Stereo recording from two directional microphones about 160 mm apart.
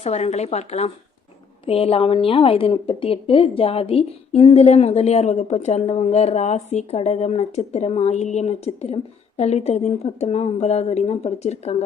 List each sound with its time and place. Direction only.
0.0 s a woman's voice: 45° left (ahead or behind)